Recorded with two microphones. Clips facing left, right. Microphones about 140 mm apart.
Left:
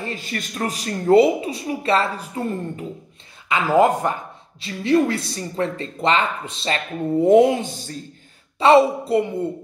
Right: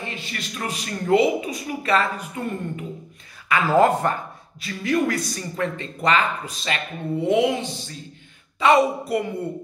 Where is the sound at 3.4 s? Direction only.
15° left (ahead or behind).